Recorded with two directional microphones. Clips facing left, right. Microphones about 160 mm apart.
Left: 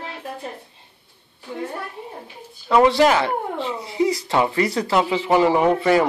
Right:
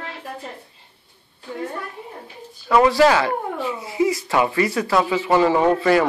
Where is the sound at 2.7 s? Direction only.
25° left (ahead or behind).